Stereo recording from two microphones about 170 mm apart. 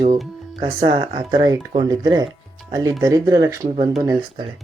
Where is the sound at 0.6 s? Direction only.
30° right (ahead or behind).